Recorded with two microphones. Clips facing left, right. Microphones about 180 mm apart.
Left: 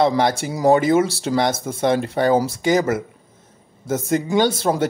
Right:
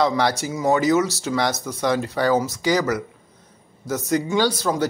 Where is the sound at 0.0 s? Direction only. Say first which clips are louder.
Left 3 dB; 25° left (ahead or behind).